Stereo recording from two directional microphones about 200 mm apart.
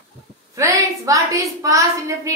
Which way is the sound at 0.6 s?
15° right (ahead or behind).